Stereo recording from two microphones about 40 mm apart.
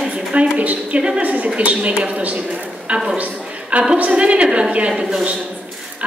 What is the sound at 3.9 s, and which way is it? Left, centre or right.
Speech, right.